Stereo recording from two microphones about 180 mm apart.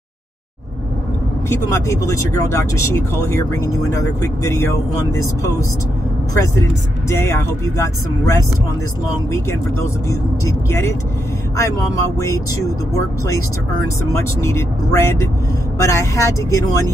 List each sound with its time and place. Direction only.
1.5 s speech: 15° left (ahead or behind)
7.1 s speech: 15° left (ahead or behind)
10.7 s speech: 15° left (ahead or behind)
14.1 s speech: 15° left (ahead or behind)